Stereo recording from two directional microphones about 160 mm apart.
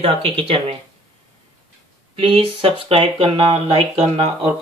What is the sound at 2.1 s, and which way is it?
Speech, 35° right (ahead or behind).